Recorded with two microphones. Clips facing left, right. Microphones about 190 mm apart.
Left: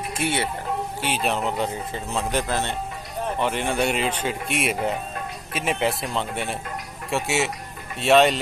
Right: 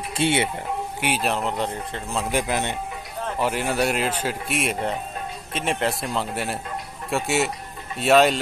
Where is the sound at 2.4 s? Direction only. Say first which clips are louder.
Right 2 dB; 15° right (ahead or behind).